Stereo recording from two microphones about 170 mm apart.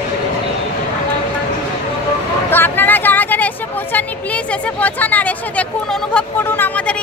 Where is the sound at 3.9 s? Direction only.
10° left (ahead or behind).